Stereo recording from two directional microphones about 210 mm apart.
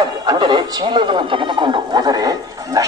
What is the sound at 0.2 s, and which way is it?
Speech, 20° right (ahead or behind).